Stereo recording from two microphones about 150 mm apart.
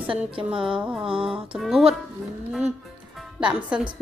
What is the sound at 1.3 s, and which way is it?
Speech, 5° right (ahead or behind).